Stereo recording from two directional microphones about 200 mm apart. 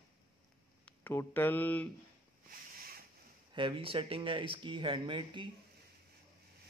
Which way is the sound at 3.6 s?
25° right (ahead or behind).